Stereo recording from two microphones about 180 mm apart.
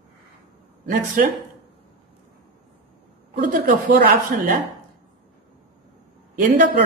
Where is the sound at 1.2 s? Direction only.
50° right (ahead or behind).